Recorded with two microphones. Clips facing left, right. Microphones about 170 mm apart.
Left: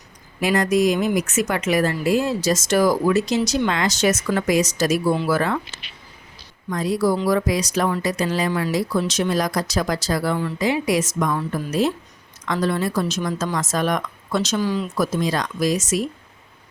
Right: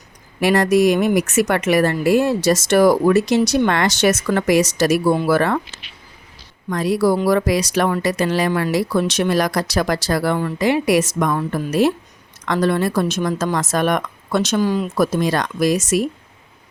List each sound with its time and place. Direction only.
0.3 s speech: 65° right (ahead or behind)
6.7 s speech: 75° right (ahead or behind)